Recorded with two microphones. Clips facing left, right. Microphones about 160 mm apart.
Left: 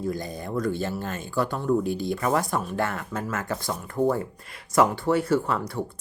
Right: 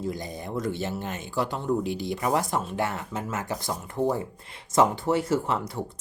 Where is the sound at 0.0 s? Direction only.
20° right (ahead or behind).